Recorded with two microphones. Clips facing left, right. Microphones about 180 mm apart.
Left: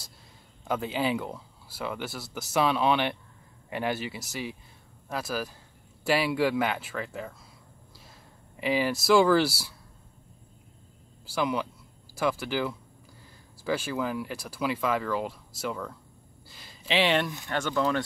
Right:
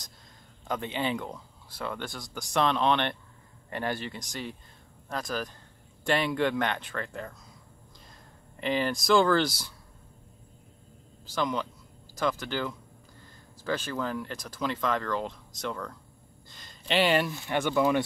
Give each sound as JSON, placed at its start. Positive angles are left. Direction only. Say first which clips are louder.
{"t": 0.7, "sound": "speech", "louder": "left 2 dB", "side_deg": 5}
{"t": 8.5, "sound": "speech", "louder": "left 2 dB", "side_deg": 5}
{"t": 11.2, "sound": "speech", "louder": "left 1 dB", "side_deg": 10}